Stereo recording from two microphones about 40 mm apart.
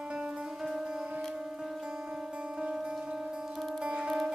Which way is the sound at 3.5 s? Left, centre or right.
Centre.